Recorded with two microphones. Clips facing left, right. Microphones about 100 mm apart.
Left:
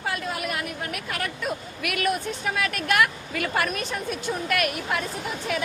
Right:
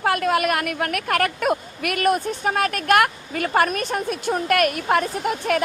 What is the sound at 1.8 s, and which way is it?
A woman's voice, 45° right (ahead or behind).